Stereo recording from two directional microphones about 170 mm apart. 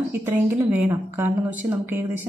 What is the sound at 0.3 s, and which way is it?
A woman's voice, 15° right (ahead or behind).